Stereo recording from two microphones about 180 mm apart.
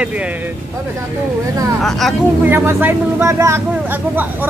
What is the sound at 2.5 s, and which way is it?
Speech, 10° right (ahead or behind).